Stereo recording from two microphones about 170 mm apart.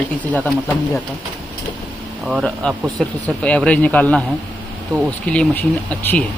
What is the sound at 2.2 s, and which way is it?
Speech, centre (ahead or behind).